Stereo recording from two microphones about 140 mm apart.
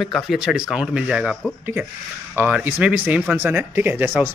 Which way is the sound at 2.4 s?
10° right (ahead or behind).